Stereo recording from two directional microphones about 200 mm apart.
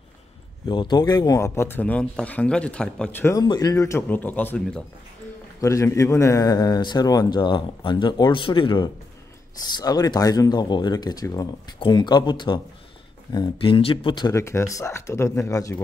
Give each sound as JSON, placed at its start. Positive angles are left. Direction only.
{"t": 0.7, "sound": "speech", "side_deg": 20}
{"t": 5.6, "sound": "speech", "side_deg": 15}